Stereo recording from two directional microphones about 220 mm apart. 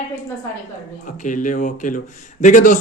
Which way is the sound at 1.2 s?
35° left (ahead or behind).